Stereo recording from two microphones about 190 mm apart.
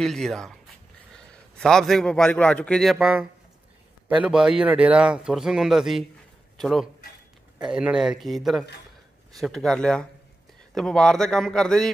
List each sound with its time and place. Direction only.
0.0 s a man's voice: centre (ahead or behind)